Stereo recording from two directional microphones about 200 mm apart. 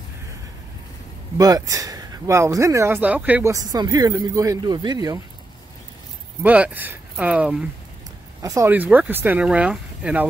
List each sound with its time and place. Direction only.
1.4 s speech: 20° right (ahead or behind)
6.4 s speech: 10° right (ahead or behind)
8.4 s speech: 15° right (ahead or behind)